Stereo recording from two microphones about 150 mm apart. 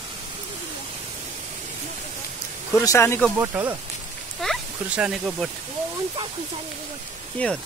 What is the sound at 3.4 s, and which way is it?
Speech, 20° right (ahead or behind).